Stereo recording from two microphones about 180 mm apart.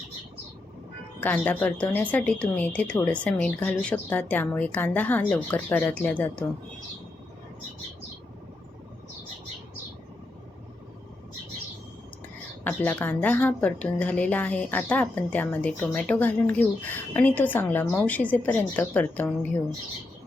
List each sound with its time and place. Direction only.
1.2 s a woman's voice: 10° left (ahead or behind)
12.6 s a woman's voice: 10° left (ahead or behind)